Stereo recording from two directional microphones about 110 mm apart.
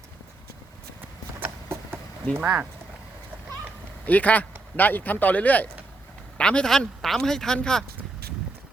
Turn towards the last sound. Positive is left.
turn(degrees=5)  # may be behind; listen again after turning